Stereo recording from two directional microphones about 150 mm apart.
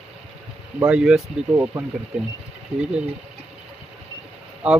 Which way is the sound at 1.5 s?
20° right (ahead or behind).